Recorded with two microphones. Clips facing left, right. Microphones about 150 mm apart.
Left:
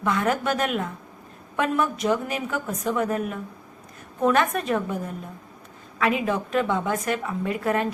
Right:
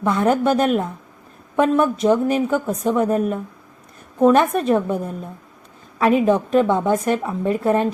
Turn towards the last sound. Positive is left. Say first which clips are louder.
# right 6 dB
turn(degrees=-30)  # may be behind; listen again after turning